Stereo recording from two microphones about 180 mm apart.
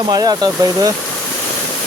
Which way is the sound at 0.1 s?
20° right (ahead or behind).